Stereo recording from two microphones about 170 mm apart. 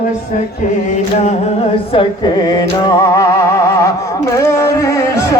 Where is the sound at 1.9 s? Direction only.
30° left (ahead or behind).